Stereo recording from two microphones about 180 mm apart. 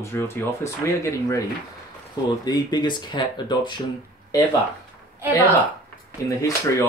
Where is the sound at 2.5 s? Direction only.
20° left (ahead or behind).